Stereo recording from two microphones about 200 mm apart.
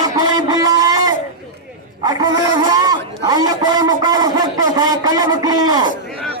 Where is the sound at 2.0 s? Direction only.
20° right (ahead or behind).